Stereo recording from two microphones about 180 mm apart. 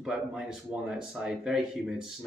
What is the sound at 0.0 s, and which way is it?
Speech, 5° right (ahead or behind).